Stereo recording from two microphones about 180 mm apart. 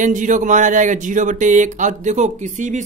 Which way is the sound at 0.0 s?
45° right (ahead or behind).